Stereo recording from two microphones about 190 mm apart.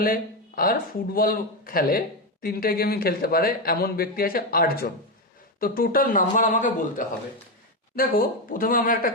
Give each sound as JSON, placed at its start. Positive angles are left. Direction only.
{"t": 0.0, "sound": "speech", "side_deg": 50}